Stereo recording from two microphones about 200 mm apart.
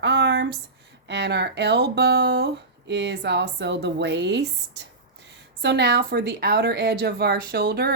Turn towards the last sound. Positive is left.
turn(degrees=-55)  # may be behind; listen again after turning